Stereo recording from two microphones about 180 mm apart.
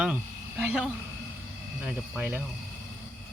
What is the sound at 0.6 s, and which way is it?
Speech, 5° right (ahead or behind).